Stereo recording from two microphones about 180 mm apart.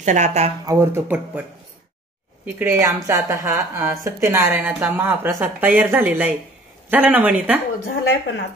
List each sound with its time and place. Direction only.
0.0 s speech: 40° right (ahead or behind)
0.7 s a woman's voice: 15° right (ahead or behind)
2.6 s a woman's voice: 15° right (ahead or behind)